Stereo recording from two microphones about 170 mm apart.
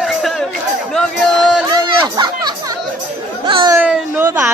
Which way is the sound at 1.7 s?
25° right (ahead or behind).